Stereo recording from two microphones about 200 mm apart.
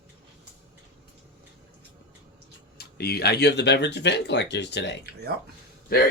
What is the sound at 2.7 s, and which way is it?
Speech, 50° left (ahead or behind).